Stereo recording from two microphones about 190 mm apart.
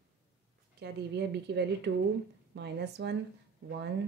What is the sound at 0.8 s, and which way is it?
A woman's voice, 65° right (ahead or behind).